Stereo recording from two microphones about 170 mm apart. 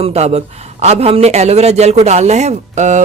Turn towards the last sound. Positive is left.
turn(degrees=-45)  # may be behind; listen again after turning